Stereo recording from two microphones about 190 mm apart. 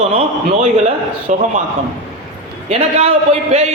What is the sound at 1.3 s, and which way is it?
Speech, 40° right (ahead or behind).